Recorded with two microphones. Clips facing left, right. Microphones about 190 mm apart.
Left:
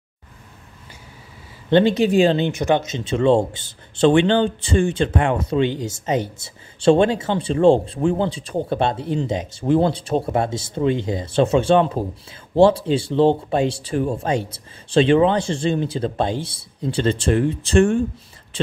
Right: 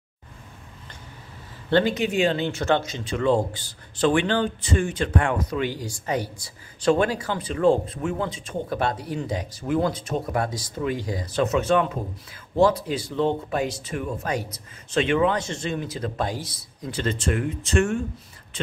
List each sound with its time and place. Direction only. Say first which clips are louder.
1.7 s speech: left 5 dB; 20° left (ahead or behind)
2.0 s speech: left 7 dB; 35° left (ahead or behind)
2.4 s speech: left 4 dB; 15° left (ahead or behind)